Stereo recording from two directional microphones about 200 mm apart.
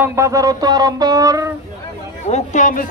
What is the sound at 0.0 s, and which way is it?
Music, 15° right (ahead or behind).